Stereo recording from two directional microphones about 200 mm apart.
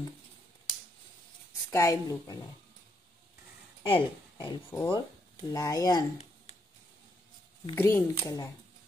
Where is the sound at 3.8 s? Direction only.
25° left (ahead or behind).